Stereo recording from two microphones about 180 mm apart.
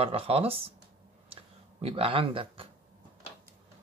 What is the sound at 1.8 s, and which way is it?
Speech, 30° right (ahead or behind).